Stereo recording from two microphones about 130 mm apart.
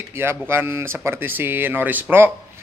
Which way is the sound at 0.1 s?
20° right (ahead or behind).